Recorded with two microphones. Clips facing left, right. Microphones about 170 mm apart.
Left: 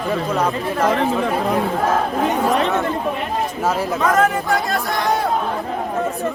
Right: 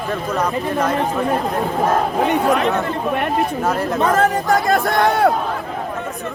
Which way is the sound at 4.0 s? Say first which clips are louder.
Right 1 dB; 35° right (ahead or behind).